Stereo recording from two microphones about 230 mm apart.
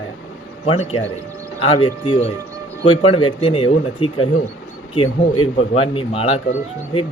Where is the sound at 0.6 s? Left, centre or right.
Left.